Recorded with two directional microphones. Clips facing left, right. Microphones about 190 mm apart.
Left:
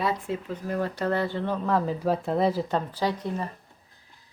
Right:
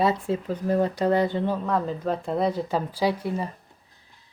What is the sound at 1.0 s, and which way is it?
Speech, 15° right (ahead or behind).